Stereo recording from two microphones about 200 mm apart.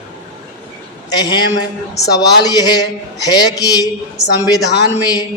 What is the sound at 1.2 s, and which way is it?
A man's voice, 20° left (ahead or behind).